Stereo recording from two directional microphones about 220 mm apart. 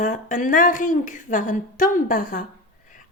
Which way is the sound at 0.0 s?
35° left (ahead or behind).